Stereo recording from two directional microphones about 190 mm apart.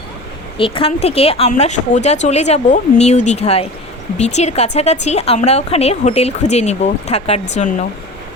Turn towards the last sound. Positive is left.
turn(degrees=40)  # may be behind; listen again after turning